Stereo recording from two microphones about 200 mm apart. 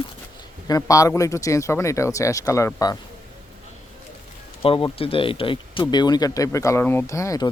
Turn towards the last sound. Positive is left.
turn(degrees=15)  # may be behind; listen again after turning